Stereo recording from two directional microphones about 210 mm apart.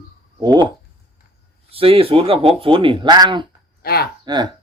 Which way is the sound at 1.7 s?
25° right (ahead or behind).